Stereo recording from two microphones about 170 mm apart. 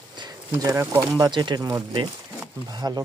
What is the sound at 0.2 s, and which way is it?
Speech, 25° right (ahead or behind).